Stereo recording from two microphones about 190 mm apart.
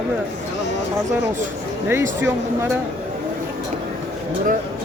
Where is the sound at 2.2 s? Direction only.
10° right (ahead or behind).